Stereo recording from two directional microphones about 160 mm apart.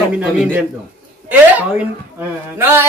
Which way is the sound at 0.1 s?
10° right (ahead or behind).